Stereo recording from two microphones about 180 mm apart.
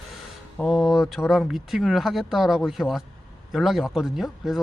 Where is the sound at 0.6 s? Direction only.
Centre (ahead or behind).